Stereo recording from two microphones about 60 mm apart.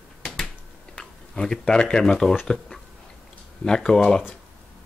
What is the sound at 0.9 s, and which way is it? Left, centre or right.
Speech, centre.